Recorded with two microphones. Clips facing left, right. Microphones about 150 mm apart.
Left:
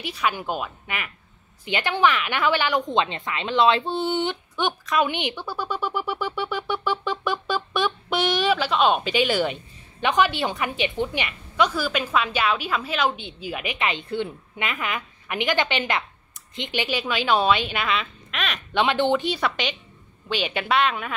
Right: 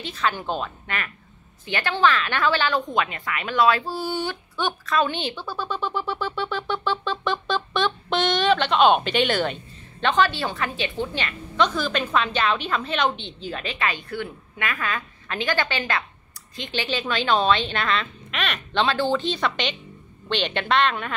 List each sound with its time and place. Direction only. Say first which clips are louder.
0.0 s a woman's voice: even; 10° left (ahead or behind)
18.7 s a woman's voice: left 2 dB; 15° left (ahead or behind)